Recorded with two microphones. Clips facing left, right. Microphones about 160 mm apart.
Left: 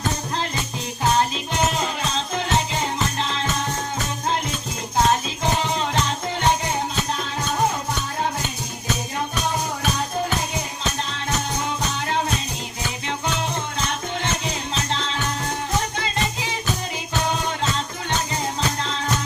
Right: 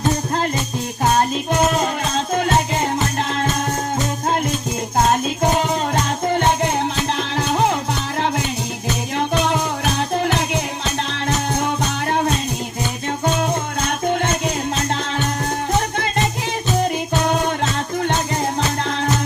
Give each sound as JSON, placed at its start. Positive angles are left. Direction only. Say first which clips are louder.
{"t": 1.7, "sound": "music", "louder": "right 5 dB", "side_deg": -50}
{"t": 6.3, "sound": "music", "louder": "right 4 dB", "side_deg": -55}
{"t": 14.1, "sound": "music", "louder": "right 7 dB", "side_deg": -55}